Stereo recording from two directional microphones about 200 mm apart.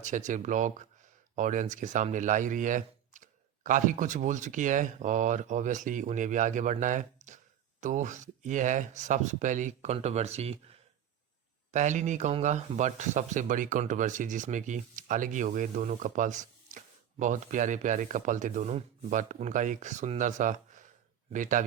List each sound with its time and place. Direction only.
0.0 s speech: 35° right (ahead or behind)